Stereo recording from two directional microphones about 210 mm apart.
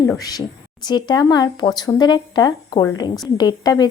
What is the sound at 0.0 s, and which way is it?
A woman's voice, 15° left (ahead or behind).